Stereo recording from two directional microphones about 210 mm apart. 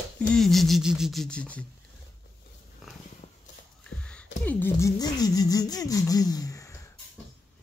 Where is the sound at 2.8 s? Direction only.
Centre (ahead or behind).